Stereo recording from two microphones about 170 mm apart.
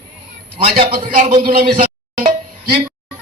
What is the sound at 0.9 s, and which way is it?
Speech, 60° right (ahead or behind).